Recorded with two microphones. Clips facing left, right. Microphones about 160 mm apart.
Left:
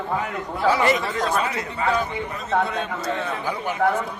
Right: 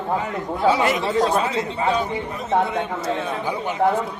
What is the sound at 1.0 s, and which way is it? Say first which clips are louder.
A man's voice: right 4 dB; 25° right (ahead or behind).